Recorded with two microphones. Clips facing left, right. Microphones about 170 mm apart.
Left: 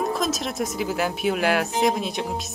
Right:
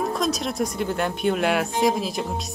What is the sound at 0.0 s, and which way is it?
Speech, centre (ahead or behind).